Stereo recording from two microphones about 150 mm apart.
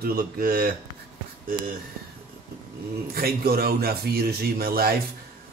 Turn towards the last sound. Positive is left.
turn(degrees=-85)